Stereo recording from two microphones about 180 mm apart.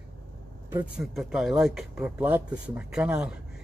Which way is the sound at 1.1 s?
Centre (ahead or behind).